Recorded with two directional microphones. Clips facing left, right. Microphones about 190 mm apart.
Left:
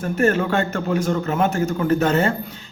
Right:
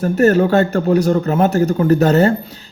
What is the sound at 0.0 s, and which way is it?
A man's voice, 40° right (ahead or behind).